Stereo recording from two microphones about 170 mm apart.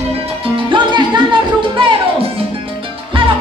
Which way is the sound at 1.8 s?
30° right (ahead or behind).